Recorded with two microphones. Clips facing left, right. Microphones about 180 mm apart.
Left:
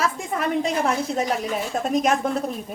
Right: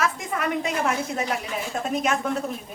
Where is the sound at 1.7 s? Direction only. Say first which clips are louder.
Left 2 dB; 35° left (ahead or behind).